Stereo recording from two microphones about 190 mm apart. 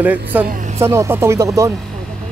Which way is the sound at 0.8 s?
15° right (ahead or behind).